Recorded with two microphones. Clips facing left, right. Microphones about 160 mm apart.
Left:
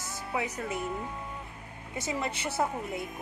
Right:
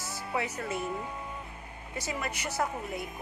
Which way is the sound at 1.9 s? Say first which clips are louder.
Left 2 dB; 25° left (ahead or behind).